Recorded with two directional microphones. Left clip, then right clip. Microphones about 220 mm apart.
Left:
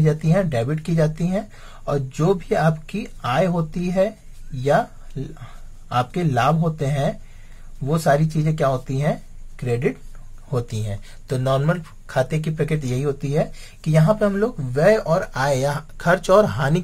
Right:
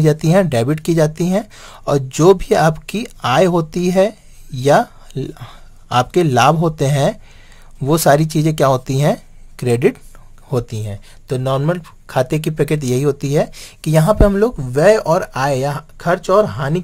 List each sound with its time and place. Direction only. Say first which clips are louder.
0.0 s speech: right 7 dB; 50° right (ahead or behind)
10.5 s speech: right 5 dB; 35° right (ahead or behind)
15.4 s speech: right 3 dB; 25° right (ahead or behind)